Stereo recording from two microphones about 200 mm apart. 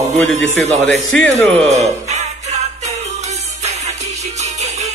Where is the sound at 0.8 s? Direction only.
5° left (ahead or behind).